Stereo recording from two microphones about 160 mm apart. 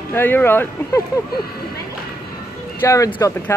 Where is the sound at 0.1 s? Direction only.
15° left (ahead or behind).